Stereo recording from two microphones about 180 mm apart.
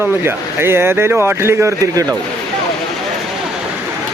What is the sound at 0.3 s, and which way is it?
Speech, 10° right (ahead or behind).